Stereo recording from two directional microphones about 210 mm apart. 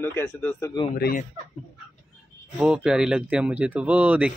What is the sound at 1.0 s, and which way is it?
Speech, 45° left (ahead or behind).